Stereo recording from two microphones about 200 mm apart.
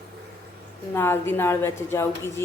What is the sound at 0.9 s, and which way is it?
A woman's voice, 10° left (ahead or behind).